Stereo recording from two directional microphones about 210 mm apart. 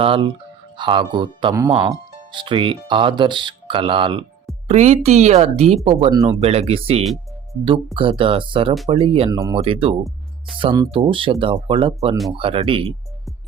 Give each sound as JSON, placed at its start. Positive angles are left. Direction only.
{"t": 0.0, "sound": "speech", "side_deg": -25}